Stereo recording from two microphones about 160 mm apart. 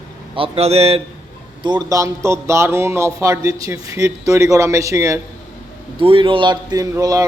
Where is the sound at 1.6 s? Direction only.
25° right (ahead or behind).